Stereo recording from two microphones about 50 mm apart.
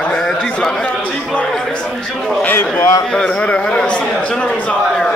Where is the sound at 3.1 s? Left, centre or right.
Centre.